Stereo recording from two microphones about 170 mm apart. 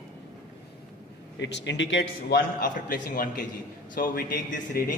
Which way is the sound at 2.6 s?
55° left (ahead or behind).